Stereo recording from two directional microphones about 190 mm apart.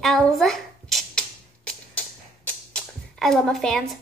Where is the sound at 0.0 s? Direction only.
Centre (ahead or behind).